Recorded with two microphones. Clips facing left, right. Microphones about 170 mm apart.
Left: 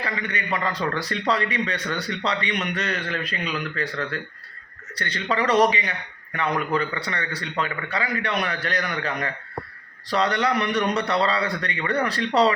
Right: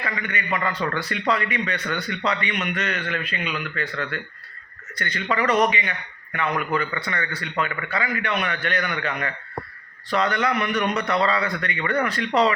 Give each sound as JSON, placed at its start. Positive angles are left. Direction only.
{"t": 0.0, "sound": "a man's voice", "side_deg": 35}